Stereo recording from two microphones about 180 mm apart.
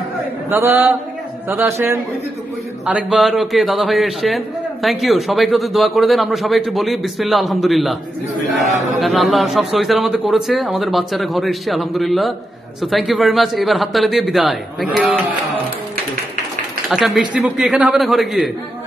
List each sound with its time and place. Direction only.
0.5 s a man's voice: 10° right (ahead or behind)
8.6 s speech: 40° right (ahead or behind)
9.0 s a man's voice: centre (ahead or behind)
16.9 s a man's voice: 5° right (ahead or behind)